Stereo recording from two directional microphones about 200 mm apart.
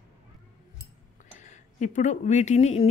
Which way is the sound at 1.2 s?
35° left (ahead or behind).